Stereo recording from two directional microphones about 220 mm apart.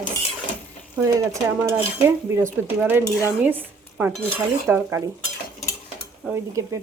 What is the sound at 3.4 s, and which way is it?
Speech, 10° right (ahead or behind).